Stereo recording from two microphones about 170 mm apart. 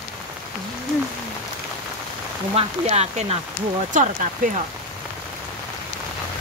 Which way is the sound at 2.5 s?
40° right (ahead or behind).